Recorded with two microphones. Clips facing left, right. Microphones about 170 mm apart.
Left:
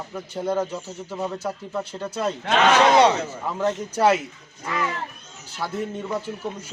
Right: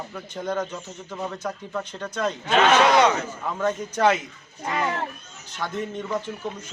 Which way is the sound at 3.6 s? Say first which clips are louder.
Left 1 dB; 10° left (ahead or behind).